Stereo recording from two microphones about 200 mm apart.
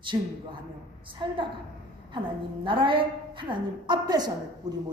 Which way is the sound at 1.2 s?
25° right (ahead or behind).